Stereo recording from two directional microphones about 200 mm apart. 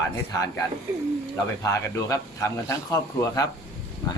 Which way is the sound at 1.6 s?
15° left (ahead or behind).